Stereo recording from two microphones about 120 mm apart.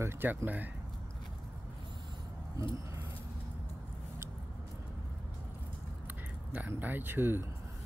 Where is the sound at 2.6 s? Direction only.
30° right (ahead or behind).